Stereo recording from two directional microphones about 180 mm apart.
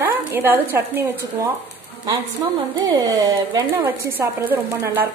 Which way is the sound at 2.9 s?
20° right (ahead or behind).